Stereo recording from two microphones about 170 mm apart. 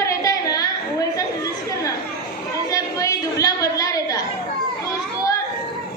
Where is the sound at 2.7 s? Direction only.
20° left (ahead or behind).